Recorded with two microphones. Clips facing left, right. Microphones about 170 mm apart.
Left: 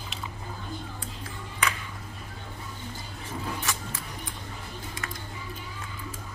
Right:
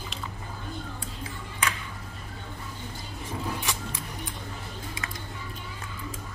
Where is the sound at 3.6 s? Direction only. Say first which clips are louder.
Even; 15° right (ahead or behind).